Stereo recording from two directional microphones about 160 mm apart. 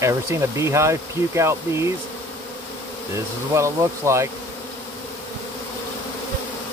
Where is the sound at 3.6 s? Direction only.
20° right (ahead or behind).